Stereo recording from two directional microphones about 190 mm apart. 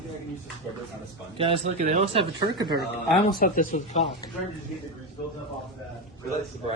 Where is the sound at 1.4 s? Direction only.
30° right (ahead or behind).